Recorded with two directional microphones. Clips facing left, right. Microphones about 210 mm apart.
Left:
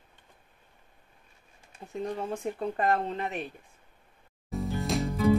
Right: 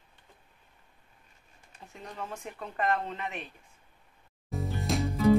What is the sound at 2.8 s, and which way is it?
Speech, 35° left (ahead or behind).